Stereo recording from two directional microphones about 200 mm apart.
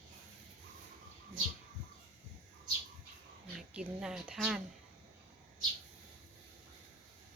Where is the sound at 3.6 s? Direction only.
5° right (ahead or behind).